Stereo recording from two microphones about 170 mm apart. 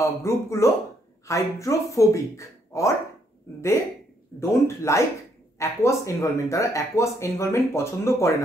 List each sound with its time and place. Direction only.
0.0 s speech: 15° left (ahead or behind)
4.4 s speech: 15° left (ahead or behind)